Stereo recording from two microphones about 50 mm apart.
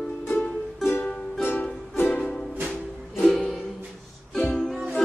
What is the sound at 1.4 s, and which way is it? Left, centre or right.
Music, left.